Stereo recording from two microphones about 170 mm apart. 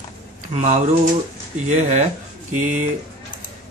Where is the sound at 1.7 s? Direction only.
45° right (ahead or behind).